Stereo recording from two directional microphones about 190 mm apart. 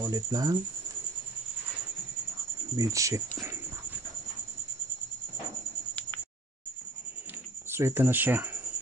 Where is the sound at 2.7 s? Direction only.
15° right (ahead or behind).